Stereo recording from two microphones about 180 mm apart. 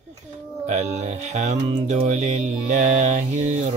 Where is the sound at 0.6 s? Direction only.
40° right (ahead or behind).